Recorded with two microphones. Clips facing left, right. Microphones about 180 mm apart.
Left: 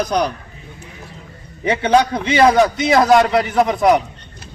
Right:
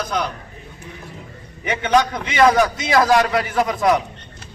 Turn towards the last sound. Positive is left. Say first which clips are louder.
# left 4 dB
turn(degrees=20)  # may be behind; listen again after turning